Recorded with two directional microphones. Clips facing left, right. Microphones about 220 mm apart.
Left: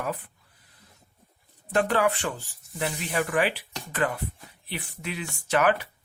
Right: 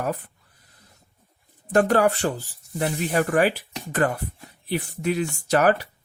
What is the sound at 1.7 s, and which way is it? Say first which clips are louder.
Speech: right 5 dB; 45° right (ahead or behind).